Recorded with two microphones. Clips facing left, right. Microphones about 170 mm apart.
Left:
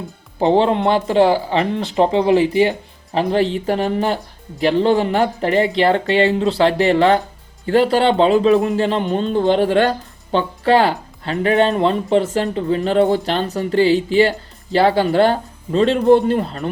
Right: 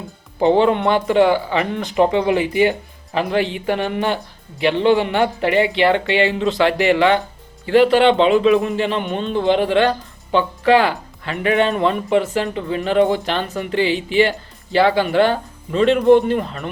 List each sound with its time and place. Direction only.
0.3 s speech: 35° left (ahead or behind)
12.2 s speech: 40° left (ahead or behind)